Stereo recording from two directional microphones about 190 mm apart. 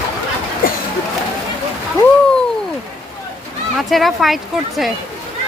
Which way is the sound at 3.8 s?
Centre (ahead or behind).